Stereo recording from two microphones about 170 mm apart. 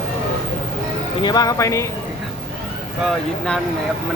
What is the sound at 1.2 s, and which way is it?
Speech, 25° left (ahead or behind).